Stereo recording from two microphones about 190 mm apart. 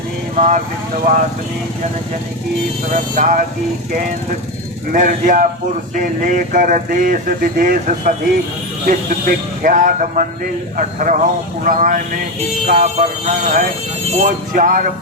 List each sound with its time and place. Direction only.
0.3 s speech: 40° right (ahead or behind)
2.9 s speech: 45° right (ahead or behind)
4.9 s speech: 45° right (ahead or behind)